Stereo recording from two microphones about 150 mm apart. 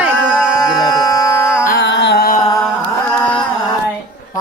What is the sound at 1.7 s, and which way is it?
Carnatic music, 85° left.